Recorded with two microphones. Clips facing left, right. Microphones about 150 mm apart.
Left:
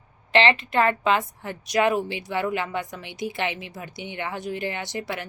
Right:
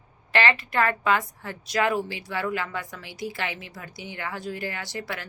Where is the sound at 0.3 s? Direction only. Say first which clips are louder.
Left 4 dB; 20° left (ahead or behind).